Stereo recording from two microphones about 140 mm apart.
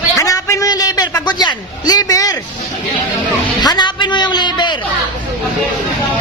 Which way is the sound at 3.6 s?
30° left (ahead or behind).